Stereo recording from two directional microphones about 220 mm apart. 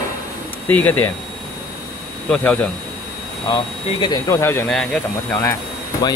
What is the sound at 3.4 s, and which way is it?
Speech, 20° left (ahead or behind).